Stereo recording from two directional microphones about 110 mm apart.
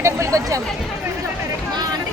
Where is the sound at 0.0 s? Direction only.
30° right (ahead or behind).